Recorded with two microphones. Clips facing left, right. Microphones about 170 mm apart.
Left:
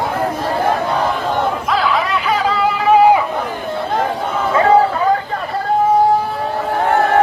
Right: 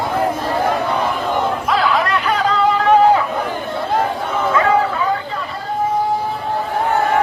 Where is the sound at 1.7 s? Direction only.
Centre (ahead or behind).